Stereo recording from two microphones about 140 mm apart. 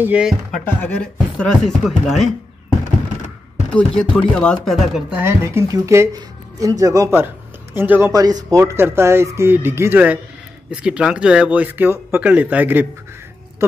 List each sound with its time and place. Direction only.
0.0 s speech: 5° right (ahead or behind)
0.7 s speech: 10° left (ahead or behind)
3.7 s speech: 5° left (ahead or behind)
5.2 s speech: 20° right (ahead or behind)
8.1 s speech: 25° right (ahead or behind)